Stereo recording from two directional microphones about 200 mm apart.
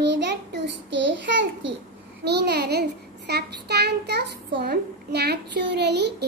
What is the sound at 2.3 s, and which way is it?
Child singing, 55° right (ahead or behind).